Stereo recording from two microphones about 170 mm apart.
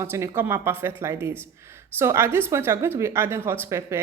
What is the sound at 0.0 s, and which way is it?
Speech, 15° right (ahead or behind).